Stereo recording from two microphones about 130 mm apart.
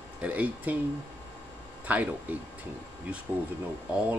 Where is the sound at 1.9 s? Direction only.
10° right (ahead or behind).